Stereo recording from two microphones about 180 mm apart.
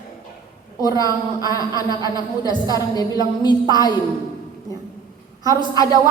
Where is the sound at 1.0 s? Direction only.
20° right (ahead or behind).